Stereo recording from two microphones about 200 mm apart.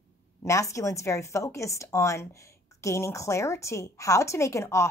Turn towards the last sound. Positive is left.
turn(degrees=15)  # may be behind; listen again after turning